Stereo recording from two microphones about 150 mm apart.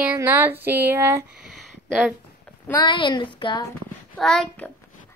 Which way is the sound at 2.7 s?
30° left (ahead or behind).